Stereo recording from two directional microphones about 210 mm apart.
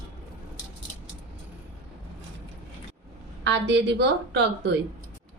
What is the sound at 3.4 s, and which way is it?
A woman's voice, 55° right (ahead or behind).